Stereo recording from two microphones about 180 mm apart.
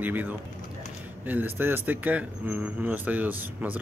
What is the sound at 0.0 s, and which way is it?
Speech, 10° right (ahead or behind).